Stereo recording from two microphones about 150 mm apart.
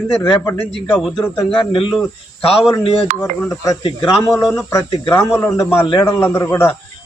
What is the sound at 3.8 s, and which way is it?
Speech, 30° left (ahead or behind).